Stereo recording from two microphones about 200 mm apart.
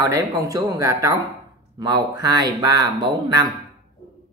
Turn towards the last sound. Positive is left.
turn(degrees=-20)  # may be behind; listen again after turning